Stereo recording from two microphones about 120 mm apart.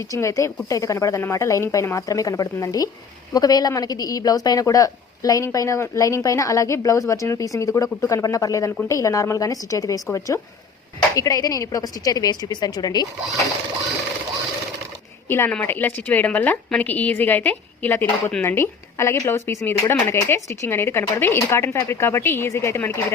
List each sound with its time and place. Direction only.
0.0 s a woman's voice: 25° left (ahead or behind)
15.3 s a woman's voice: 20° left (ahead or behind)